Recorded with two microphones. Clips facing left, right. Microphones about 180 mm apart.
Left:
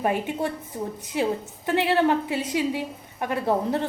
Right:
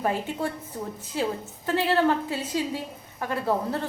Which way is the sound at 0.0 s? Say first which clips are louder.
Left 2 dB; 15° left (ahead or behind).